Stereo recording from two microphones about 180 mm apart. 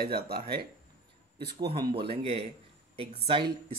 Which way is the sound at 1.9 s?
30° right (ahead or behind).